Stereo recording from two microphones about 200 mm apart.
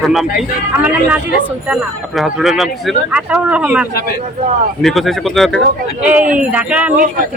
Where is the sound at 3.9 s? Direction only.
50° left (ahead or behind).